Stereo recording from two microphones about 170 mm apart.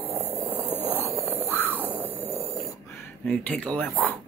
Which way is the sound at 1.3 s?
10° left (ahead or behind).